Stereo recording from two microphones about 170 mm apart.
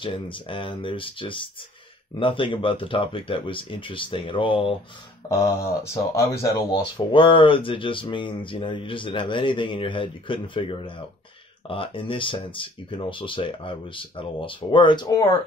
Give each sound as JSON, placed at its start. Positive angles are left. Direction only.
{"t": 0.0, "sound": "speech", "side_deg": 30}
{"t": 5.3, "sound": "speech", "side_deg": 20}
{"t": 6.7, "sound": "speech", "side_deg": 30}